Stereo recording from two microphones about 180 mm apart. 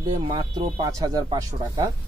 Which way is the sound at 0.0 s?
25° right (ahead or behind).